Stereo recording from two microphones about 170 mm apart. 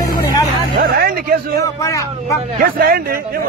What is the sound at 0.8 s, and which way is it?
Speech, 65° right (ahead or behind).